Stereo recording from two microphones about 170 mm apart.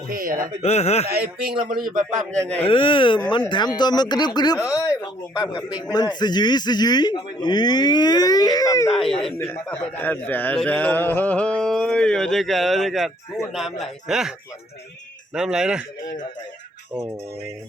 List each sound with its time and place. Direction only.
0.1 s speech: 55° right (ahead or behind)
0.6 s speech: 40° left (ahead or behind)
1.0 s speech: 65° right (ahead or behind)
2.6 s speech: 30° left (ahead or behind)
8.9 s a man's voice: centre (ahead or behind)